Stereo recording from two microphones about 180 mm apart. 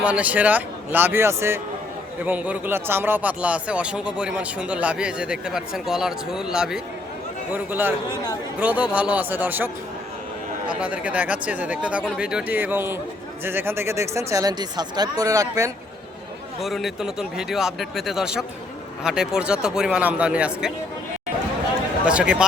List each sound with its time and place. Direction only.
0.0 s a man's voice: 10° right (ahead or behind)
10.7 s speech: 5° right (ahead or behind)
16.6 s a man's voice: centre (ahead or behind)
22.0 s a man's voice: 5° right (ahead or behind)